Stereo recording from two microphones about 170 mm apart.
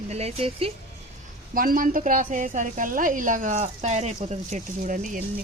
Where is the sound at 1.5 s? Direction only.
55° right (ahead or behind).